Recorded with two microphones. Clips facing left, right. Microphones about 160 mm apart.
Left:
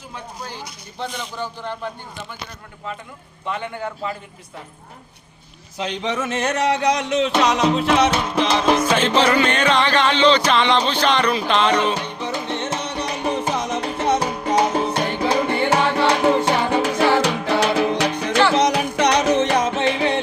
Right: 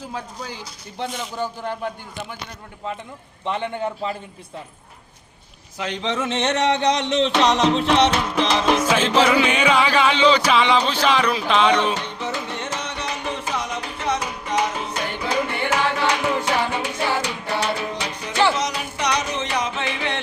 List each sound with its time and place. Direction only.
1.0 s music: 5° right (ahead or behind)
3.4 s a man's voice: 20° right (ahead or behind)
5.7 s a sound: 20° left (ahead or behind)
6.5 s a man's voice: 25° right (ahead or behind)
6.8 s music: 5° left (ahead or behind)
12.7 s music: 35° left (ahead or behind)
14.7 s music: 50° left (ahead or behind)
15.7 s music: 35° left (ahead or behind)
16.9 s music: 85° left; by 20.1 s 45° left (ahead or behind)